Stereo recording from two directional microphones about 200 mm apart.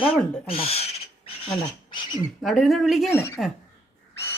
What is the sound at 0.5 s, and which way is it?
Owl, 30° left (ahead or behind).